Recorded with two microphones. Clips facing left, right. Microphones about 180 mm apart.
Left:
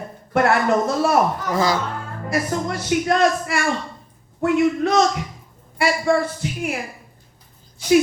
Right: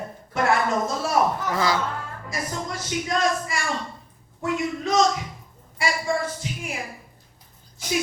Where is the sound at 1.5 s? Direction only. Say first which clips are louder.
Left 7 dB; 45° left (ahead or behind).